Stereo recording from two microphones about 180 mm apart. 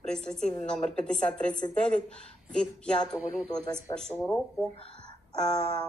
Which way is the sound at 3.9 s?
20° left (ahead or behind).